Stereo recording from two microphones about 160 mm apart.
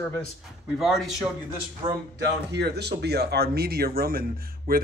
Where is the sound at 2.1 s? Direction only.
90° right.